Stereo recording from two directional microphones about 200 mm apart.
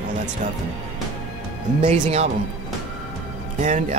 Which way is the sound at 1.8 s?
35° right (ahead or behind).